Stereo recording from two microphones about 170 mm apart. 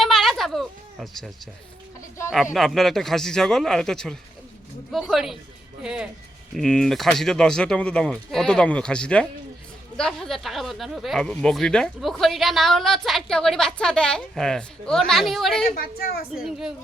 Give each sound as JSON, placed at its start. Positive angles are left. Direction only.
{"t": 0.0, "sound": "a sound", "side_deg": 0}
{"t": 2.3, "sound": "speech", "side_deg": 0}
{"t": 15.7, "sound": "a woman's voice", "side_deg": 60}
{"t": 16.3, "sound": "speech", "side_deg": -5}